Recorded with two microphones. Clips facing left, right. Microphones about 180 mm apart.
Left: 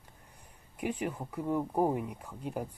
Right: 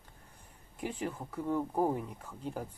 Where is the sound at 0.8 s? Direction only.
15° left (ahead or behind).